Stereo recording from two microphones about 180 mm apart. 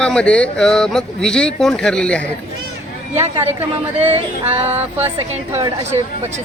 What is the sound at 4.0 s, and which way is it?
Speech, 35° right (ahead or behind).